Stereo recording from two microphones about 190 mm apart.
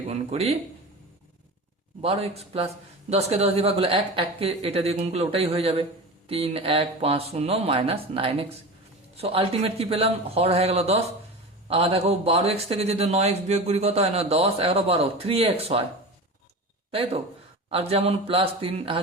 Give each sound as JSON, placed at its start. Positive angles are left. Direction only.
{"t": 0.1, "sound": "a man's voice", "side_deg": -35}
{"t": 2.0, "sound": "a man's voice", "side_deg": -30}
{"t": 16.9, "sound": "a man's voice", "side_deg": -30}